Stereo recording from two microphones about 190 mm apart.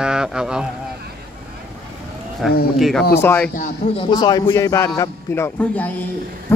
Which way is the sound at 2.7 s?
Centre (ahead or behind).